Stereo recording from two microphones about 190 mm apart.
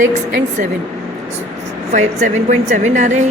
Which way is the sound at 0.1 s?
40° right (ahead or behind).